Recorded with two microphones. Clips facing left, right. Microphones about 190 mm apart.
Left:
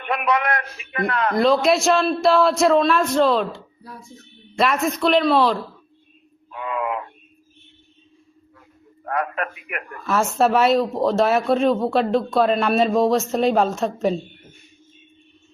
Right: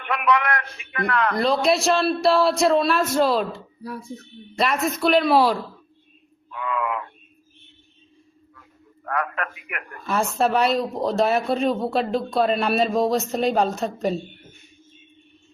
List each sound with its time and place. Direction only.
0.0 s a man's voice: 25° left (ahead or behind)
1.4 s speech: centre (ahead or behind)
4.5 s speech: centre (ahead or behind)
6.5 s a sound: 25° left (ahead or behind)
9.0 s a man's voice: 25° left (ahead or behind)
10.1 s speech: centre (ahead or behind)